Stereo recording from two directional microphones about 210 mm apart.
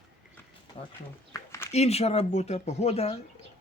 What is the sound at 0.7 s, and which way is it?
Speech, 30° left (ahead or behind).